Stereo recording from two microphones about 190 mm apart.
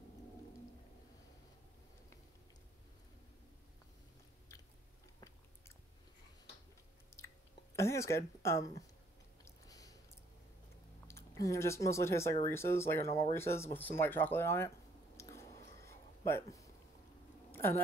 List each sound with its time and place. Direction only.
7.1 s chewing: 15° left (ahead or behind)
7.7 s speech: 15° left (ahead or behind)
9.4 s chewing: 20° left (ahead or behind)
11.1 s speech: 15° left (ahead or behind)
15.1 s chewing: 15° left (ahead or behind)
16.3 s speech: 15° left (ahead or behind)
17.5 s a sound: 10° left (ahead or behind)